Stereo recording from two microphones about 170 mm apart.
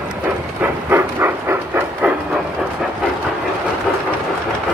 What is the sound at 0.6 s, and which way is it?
Vehicle, 10° right (ahead or behind).